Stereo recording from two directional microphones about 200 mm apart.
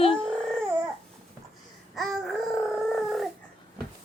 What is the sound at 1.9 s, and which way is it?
Babbling, centre (ahead or behind).